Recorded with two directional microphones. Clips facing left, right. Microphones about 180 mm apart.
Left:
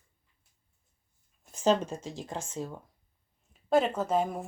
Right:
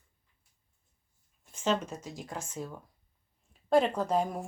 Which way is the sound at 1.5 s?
40° left (ahead or behind).